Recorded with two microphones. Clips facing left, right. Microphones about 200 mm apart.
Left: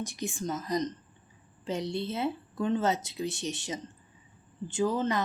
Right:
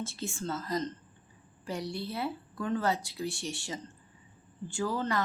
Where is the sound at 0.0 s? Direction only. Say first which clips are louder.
Left 2 dB; 15° left (ahead or behind).